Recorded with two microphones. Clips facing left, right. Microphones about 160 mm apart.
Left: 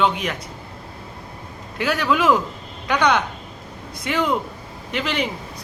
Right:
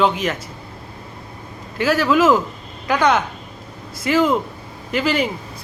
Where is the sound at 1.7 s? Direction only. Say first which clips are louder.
Right 4 dB; centre (ahead or behind).